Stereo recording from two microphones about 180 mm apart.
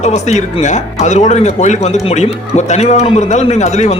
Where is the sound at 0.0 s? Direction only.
40° left (ahead or behind).